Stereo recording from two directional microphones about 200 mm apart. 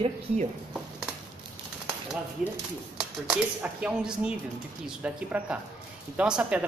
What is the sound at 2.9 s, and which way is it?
Speech, 5° right (ahead or behind).